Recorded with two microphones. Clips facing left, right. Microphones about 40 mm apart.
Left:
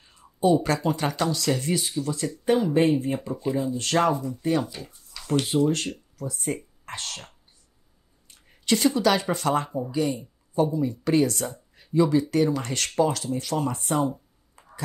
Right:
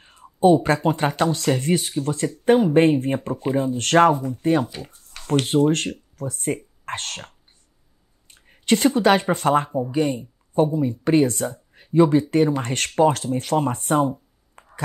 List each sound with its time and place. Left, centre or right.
0.0 s speech: right
8.3 s speech: right
14.6 s a sound: right